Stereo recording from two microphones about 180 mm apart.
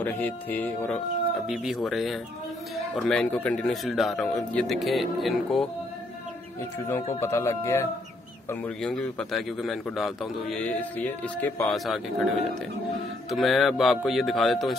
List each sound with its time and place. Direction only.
0.0 s a man's voice: 10° left (ahead or behind)
7.2 s a man's voice: 15° left (ahead or behind)
11.7 s a man's voice: centre (ahead or behind)
13.3 s a man's voice: centre (ahead or behind)